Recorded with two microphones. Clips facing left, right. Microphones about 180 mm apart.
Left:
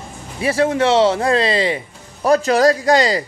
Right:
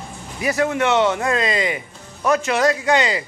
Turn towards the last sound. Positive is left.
turn(degrees=35)  # may be behind; listen again after turning